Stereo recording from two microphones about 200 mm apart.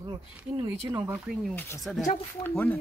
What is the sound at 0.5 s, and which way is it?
Speech, 30° right (ahead or behind).